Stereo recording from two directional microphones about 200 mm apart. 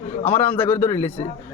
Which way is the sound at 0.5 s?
10° left (ahead or behind).